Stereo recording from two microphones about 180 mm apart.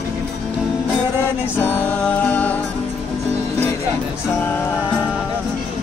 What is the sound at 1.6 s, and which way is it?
Music, 10° left (ahead or behind).